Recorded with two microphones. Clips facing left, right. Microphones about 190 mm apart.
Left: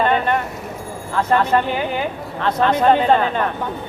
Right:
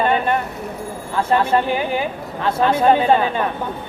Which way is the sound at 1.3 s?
10° right (ahead or behind).